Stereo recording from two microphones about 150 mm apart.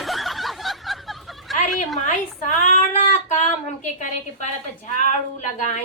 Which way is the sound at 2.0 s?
55° left (ahead or behind).